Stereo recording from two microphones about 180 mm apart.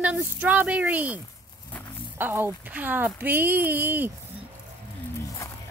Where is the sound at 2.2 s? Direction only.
10° right (ahead or behind).